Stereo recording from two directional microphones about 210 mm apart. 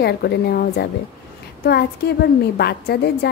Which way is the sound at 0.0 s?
50° left (ahead or behind).